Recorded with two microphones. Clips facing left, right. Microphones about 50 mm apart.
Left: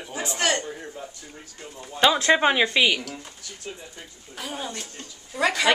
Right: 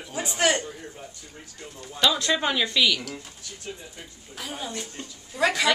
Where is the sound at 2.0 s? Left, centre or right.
Left.